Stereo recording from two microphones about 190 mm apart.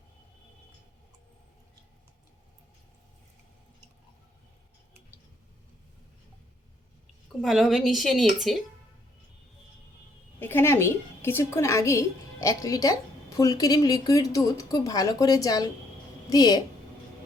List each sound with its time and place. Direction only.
7.4 s a woman's voice: centre (ahead or behind)
10.4 s a woman's voice: 10° left (ahead or behind)